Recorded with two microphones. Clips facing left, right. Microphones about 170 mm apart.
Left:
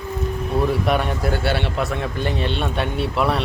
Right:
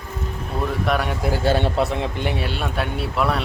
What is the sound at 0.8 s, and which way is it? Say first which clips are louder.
Speech: left 1 dB; centre (ahead or behind).